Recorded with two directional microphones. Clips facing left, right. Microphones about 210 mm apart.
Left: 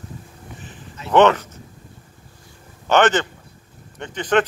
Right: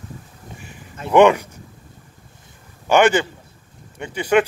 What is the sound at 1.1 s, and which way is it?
Speech, 10° right (ahead or behind).